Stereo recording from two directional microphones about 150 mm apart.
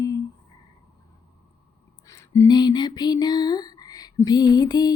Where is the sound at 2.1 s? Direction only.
20° left (ahead or behind).